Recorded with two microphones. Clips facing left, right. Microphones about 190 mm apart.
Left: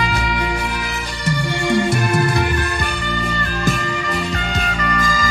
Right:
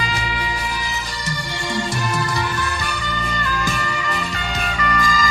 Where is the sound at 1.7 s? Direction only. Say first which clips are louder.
Left 6 dB; 55° left (ahead or behind).